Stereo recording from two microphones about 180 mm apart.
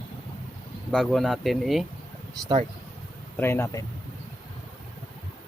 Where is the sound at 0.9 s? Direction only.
Centre (ahead or behind).